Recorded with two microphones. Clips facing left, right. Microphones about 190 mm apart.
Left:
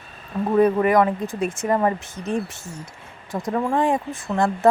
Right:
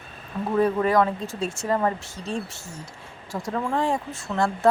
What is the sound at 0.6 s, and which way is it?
Speech, 15° left (ahead or behind).